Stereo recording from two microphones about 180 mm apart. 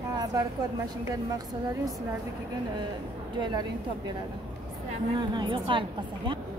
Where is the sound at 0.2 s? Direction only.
20° right (ahead or behind).